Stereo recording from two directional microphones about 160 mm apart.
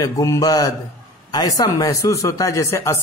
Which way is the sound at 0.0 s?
20° left (ahead or behind).